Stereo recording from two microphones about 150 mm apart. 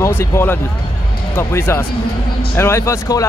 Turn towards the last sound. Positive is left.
turn(degrees=20)  # may be behind; listen again after turning